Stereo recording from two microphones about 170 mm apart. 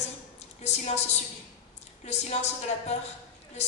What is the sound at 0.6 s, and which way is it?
Speech, 40° left (ahead or behind).